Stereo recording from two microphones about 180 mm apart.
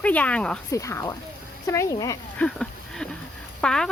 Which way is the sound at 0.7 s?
15° left (ahead or behind).